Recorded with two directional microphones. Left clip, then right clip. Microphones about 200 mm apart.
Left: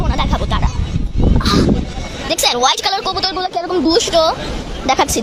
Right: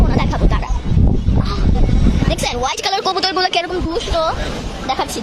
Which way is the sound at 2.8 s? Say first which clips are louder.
Even; 15° right (ahead or behind).